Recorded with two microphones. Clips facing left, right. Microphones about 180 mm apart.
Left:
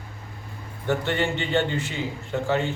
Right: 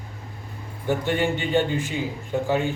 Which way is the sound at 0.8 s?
10° right (ahead or behind).